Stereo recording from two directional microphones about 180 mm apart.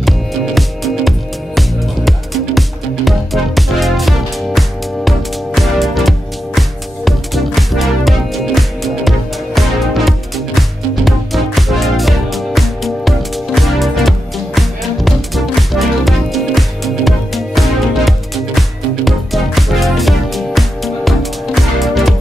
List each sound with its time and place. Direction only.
0.6 s music: centre (ahead or behind)